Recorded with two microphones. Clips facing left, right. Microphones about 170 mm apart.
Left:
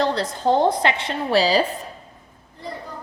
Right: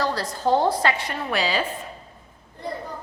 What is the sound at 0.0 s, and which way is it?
A woman's voice, 20° left (ahead or behind).